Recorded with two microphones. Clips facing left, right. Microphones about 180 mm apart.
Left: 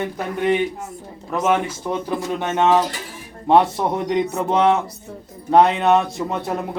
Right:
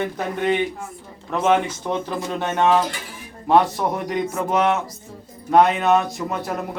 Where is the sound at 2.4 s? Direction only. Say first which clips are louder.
Left 1 dB; 20° left (ahead or behind).